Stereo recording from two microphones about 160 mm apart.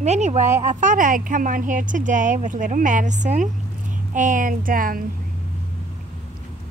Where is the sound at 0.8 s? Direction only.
55° right (ahead or behind).